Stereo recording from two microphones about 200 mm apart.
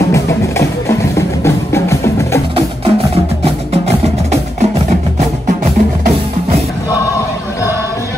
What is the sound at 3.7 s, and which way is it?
Music, 30° right (ahead or behind).